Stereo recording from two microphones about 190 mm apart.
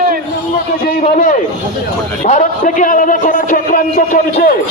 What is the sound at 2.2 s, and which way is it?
A man's voice, 40° left (ahead or behind).